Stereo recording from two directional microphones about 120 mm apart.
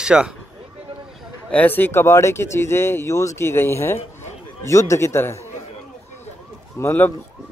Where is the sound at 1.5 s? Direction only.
15° left (ahead or behind).